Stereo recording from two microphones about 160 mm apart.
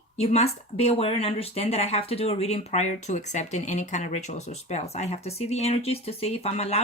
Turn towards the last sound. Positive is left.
turn(degrees=40)  # may be behind; listen again after turning